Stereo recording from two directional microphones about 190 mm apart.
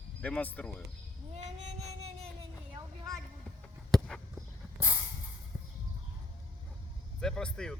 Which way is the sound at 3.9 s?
Centre (ahead or behind).